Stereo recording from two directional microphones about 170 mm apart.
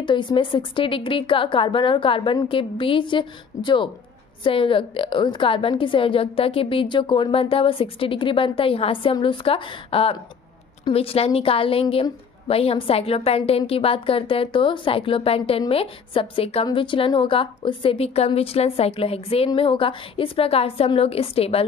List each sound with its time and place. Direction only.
0.0 s a woman's voice: 30° left (ahead or behind)